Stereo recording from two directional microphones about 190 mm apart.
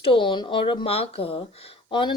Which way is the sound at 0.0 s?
25° left (ahead or behind).